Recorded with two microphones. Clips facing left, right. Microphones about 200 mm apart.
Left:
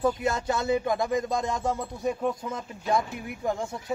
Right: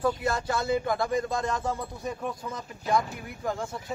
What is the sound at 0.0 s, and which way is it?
Speech, 20° left (ahead or behind).